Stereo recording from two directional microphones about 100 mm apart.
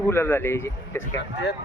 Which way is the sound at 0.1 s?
25° left (ahead or behind).